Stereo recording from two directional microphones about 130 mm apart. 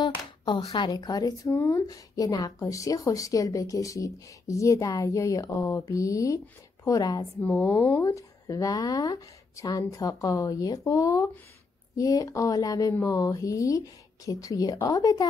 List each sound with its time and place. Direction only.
0.5 s speech: 35° left (ahead or behind)